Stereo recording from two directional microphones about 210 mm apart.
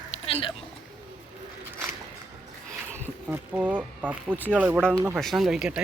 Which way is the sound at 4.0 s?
10° right (ahead or behind).